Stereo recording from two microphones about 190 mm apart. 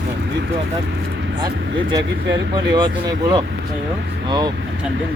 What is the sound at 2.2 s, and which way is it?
Speech, 70° right (ahead or behind).